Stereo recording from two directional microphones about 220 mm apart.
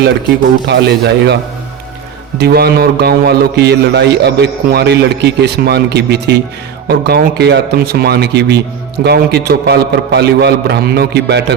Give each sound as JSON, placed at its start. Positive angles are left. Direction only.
{"t": 0.7, "sound": "speech", "side_deg": -50}
{"t": 2.4, "sound": "speech", "side_deg": -45}